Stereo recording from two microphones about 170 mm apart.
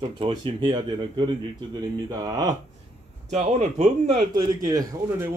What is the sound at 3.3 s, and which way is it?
A man's voice, 45° right (ahead or behind).